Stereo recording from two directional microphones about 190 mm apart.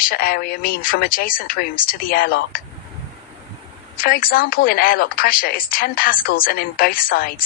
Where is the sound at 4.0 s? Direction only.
50° left (ahead or behind).